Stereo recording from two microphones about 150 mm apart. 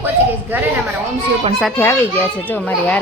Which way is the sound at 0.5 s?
10° right (ahead or behind).